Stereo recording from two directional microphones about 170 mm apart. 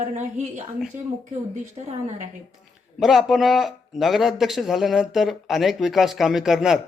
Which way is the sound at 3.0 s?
Centre (ahead or behind).